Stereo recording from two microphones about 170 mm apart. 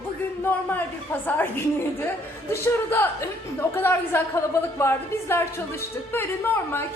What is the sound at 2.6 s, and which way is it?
A woman's voice, 15° left (ahead or behind).